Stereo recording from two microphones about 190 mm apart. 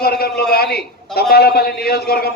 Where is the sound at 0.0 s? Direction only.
55° left (ahead or behind).